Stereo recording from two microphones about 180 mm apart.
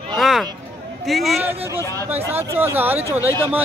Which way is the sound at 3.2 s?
15° left (ahead or behind).